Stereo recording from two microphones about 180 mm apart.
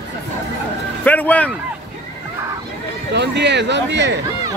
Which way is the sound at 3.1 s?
75° right (ahead or behind).